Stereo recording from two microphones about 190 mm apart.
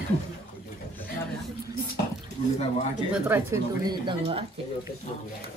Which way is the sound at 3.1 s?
10° right (ahead or behind).